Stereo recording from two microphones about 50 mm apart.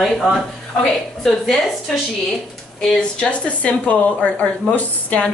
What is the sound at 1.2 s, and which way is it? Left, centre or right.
Speech, centre.